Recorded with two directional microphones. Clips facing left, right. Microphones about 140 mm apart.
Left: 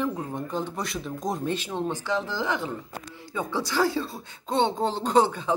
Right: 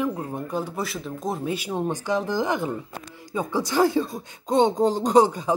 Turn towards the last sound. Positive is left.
turn(degrees=-15)  # may be behind; listen again after turning